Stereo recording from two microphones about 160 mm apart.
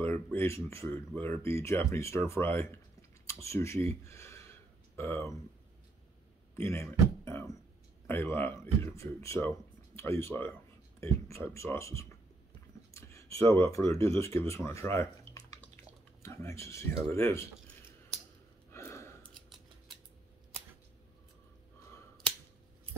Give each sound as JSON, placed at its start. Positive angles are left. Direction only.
{"t": 0.0, "sound": "speech", "side_deg": 15}
{"t": 4.0, "sound": "a sound", "side_deg": 15}
{"t": 6.5, "sound": "music", "side_deg": 15}
{"t": 8.1, "sound": "speech", "side_deg": 15}
{"t": 18.7, "sound": "gasp", "side_deg": 15}